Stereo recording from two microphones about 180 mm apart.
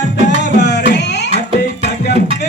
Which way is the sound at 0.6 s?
70° left (ahead or behind).